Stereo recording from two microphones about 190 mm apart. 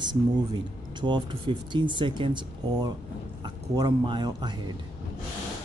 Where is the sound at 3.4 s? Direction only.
25° right (ahead or behind).